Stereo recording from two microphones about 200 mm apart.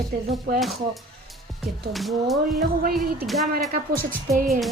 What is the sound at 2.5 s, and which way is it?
Speech, 50° right (ahead or behind).